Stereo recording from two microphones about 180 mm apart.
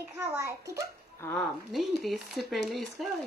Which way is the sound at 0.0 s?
15° right (ahead or behind).